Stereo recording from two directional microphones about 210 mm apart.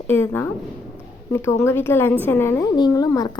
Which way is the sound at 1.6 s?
10° left (ahead or behind).